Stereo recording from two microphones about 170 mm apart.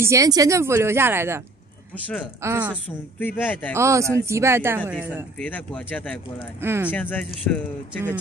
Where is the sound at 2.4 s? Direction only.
10° right (ahead or behind).